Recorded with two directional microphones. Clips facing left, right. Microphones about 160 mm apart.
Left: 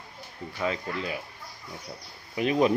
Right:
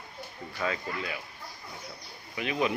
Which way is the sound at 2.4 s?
40° left (ahead or behind).